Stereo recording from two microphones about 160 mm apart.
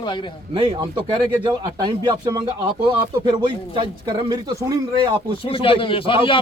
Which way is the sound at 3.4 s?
30° right (ahead or behind).